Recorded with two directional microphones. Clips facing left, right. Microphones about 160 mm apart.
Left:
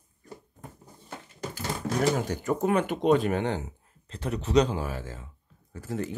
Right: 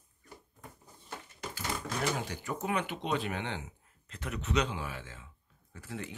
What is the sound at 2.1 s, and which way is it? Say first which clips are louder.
Speech: left 9 dB; 45° left (ahead or behind).